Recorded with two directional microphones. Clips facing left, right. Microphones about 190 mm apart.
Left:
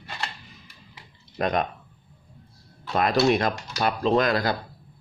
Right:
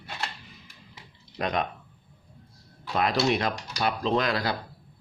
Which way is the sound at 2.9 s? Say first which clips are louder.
Left 4 dB; 45° left (ahead or behind).